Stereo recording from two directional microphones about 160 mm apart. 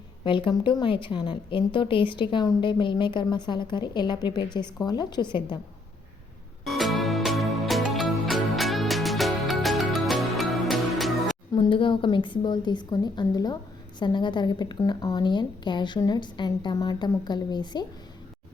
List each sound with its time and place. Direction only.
0.3 s a woman's voice: 30° left (ahead or behind)
6.7 s music: centre (ahead or behind)
11.5 s a woman's voice: 30° left (ahead or behind)